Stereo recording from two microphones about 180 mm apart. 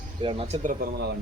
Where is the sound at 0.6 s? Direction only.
50° right (ahead or behind).